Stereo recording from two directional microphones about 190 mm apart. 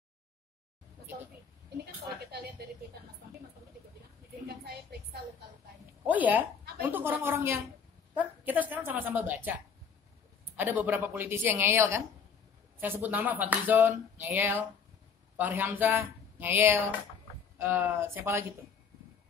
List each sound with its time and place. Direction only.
4.5 s a woman's voice: 55° right (ahead or behind)
6.0 s speech: 10° right (ahead or behind)
12.8 s speech: 10° right (ahead or behind)